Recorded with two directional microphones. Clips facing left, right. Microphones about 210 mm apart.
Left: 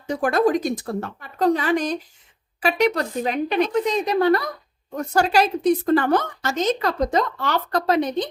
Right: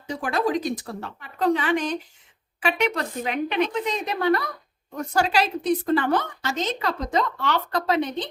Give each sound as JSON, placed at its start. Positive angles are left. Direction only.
{"t": 0.1, "sound": "a woman's voice", "side_deg": 45}